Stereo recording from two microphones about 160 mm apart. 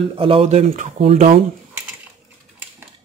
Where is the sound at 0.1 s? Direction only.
35° right (ahead or behind); by 1.0 s 50° right (ahead or behind).